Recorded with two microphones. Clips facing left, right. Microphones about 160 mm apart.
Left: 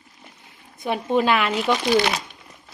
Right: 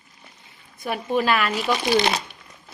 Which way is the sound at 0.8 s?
20° left (ahead or behind).